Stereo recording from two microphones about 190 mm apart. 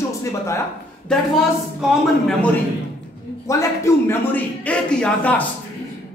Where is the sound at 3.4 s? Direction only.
15° left (ahead or behind).